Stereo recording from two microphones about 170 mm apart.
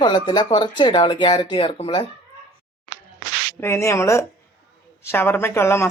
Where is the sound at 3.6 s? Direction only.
15° left (ahead or behind).